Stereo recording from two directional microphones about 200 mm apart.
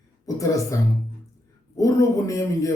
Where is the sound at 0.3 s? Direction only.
15° left (ahead or behind).